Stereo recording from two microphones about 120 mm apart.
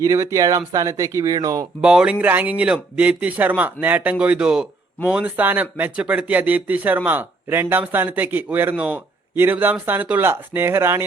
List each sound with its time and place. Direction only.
0.0 s speech: 25° right (ahead or behind)
1.8 s speech: 10° right (ahead or behind)